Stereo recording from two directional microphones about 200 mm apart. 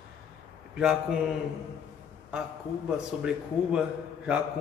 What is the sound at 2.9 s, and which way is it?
Speech, 5° right (ahead or behind).